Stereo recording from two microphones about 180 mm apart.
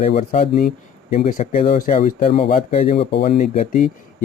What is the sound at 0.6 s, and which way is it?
Speech, 55° left (ahead or behind).